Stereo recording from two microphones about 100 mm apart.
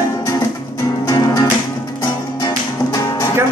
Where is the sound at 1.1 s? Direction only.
40° left (ahead or behind).